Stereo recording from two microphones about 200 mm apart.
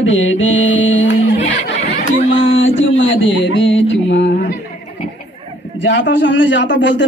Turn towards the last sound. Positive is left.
turn(degrees=65)  # may be behind; listen again after turning